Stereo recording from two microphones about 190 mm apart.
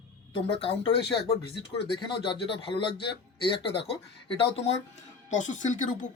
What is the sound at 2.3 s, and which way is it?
Speech, 25° left (ahead or behind).